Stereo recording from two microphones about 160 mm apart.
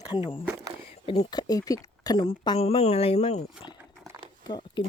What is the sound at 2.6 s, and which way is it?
Speech, 40° left (ahead or behind).